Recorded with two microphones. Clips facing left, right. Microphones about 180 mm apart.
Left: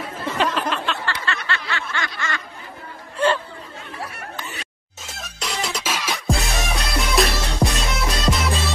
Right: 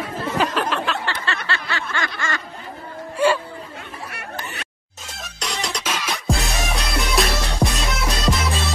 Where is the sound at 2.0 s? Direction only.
45° right (ahead or behind).